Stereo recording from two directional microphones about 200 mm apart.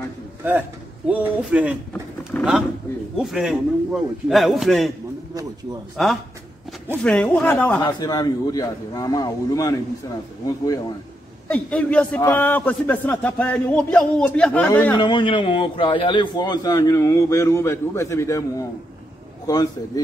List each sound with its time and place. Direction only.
0.5 s a man's voice: 10° right (ahead or behind)
5.3 s a man's voice: 15° right (ahead or behind)
6.0 s a man's voice: centre (ahead or behind)
7.8 s a man's voice: 20° left (ahead or behind)
11.4 s a man's voice: 5° left (ahead or behind)
15.0 s a man's voice: 25° left (ahead or behind)